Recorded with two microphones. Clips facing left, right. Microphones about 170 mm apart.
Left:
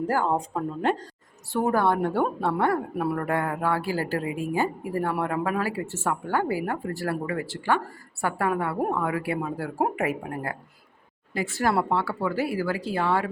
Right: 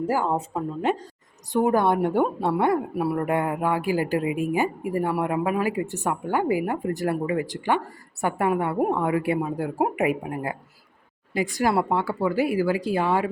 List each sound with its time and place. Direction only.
0.1 s speech: 5° right (ahead or behind)
1.5 s speech: 15° right (ahead or behind)
2.9 s speech: 5° right (ahead or behind)
3.2 s a woman's voice: 20° right (ahead or behind)